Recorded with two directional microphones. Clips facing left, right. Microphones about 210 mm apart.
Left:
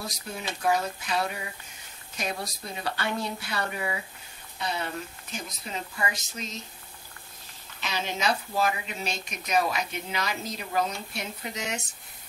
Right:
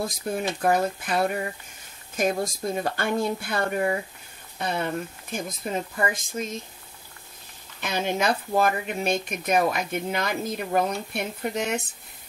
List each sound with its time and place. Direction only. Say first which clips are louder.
0.0 s speech: right 9 dB; 50° right (ahead or behind)
7.8 s speech: right 5 dB; 55° right (ahead or behind)